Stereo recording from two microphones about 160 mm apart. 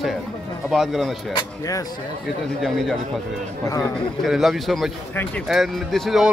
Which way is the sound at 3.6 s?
20° left (ahead or behind).